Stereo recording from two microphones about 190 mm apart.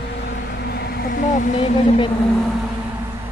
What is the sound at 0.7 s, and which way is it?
Speech, 55° left (ahead or behind).